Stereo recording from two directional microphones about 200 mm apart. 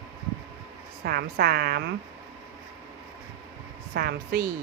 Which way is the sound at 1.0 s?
50° right (ahead or behind).